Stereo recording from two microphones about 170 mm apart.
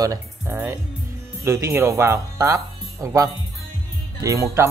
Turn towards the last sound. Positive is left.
turn(degrees=-15)  # may be behind; listen again after turning